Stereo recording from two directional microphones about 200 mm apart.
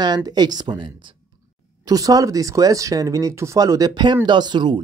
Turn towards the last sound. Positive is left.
turn(degrees=-25)  # may be behind; listen again after turning